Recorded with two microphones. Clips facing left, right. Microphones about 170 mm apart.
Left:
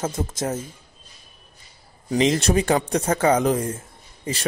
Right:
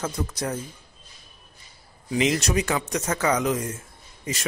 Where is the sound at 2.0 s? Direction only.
30° left (ahead or behind).